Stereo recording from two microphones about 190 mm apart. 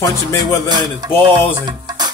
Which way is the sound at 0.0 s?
15° left (ahead or behind).